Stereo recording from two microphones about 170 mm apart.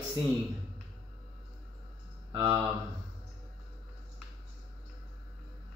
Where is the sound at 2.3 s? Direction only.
15° right (ahead or behind).